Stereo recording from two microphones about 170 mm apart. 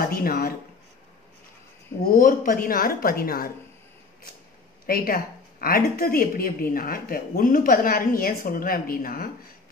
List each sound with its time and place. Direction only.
0.0 s speech: 60° left (ahead or behind)
2.0 s speech: 55° left (ahead or behind)
4.8 s speech: 60° left (ahead or behind)